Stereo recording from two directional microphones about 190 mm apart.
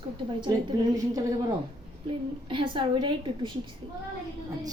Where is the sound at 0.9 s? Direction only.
20° right (ahead or behind).